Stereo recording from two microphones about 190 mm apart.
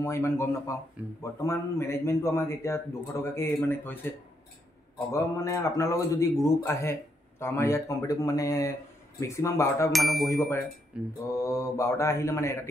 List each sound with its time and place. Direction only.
0.0 s a man's voice: 15° left (ahead or behind)
5.1 s a man's voice: 15° left (ahead or behind)
9.9 s a sound: centre (ahead or behind)
10.2 s a man's voice: 15° left (ahead or behind)
10.9 s a sound: 5° right (ahead or behind)
11.3 s a man's voice: 15° left (ahead or behind)